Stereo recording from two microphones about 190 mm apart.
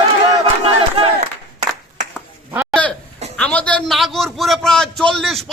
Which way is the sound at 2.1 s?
10° right (ahead or behind).